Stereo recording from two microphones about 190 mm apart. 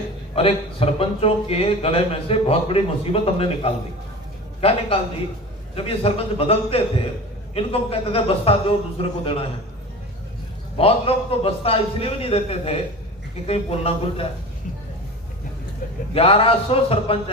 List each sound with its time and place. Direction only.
0.3 s a man's voice: 30° left (ahead or behind)
10.8 s a man's voice: 30° left (ahead or behind)
16.1 s a man's voice: 30° left (ahead or behind)